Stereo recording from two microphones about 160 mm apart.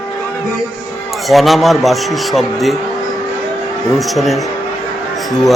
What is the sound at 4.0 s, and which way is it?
Speech, centre (ahead or behind).